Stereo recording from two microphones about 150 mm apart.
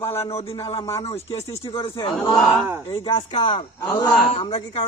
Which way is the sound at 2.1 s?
Centre (ahead or behind).